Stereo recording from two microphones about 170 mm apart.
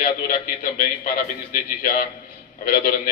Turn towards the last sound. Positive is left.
turn(degrees=55)  # may be behind; listen again after turning